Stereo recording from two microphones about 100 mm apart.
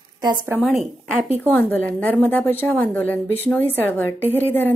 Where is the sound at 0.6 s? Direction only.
Centre (ahead or behind).